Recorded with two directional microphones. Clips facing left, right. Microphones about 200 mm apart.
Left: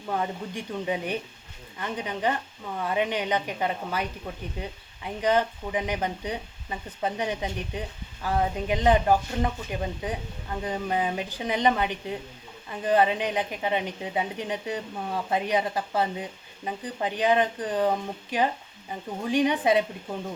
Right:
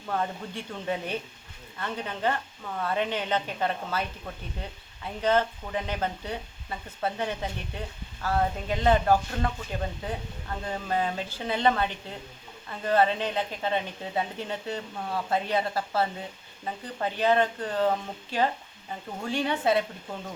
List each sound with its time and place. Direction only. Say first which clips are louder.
0.1 s speech: left 1 dB; 15° left (ahead or behind)